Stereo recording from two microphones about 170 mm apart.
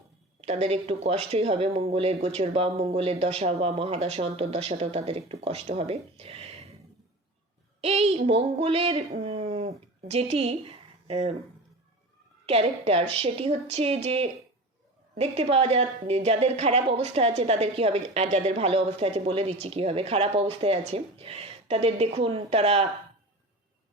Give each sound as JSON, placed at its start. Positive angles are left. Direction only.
{"t": 0.4, "sound": "a woman's voice", "side_deg": -40}
{"t": 7.8, "sound": "a woman's voice", "side_deg": -40}
{"t": 12.5, "sound": "a woman's voice", "side_deg": -40}